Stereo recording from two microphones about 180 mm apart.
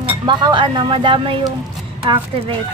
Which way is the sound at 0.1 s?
25° right (ahead or behind).